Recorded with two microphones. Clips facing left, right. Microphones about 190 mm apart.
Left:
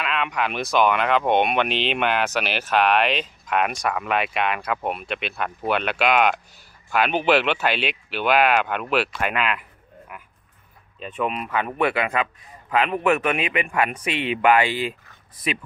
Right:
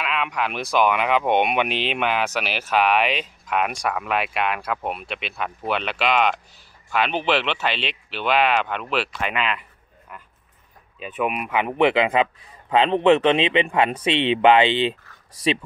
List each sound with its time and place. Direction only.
0.0 s speech: 5° right (ahead or behind)
11.0 s speech: 5° right (ahead or behind); by 15.0 s 25° right (ahead or behind)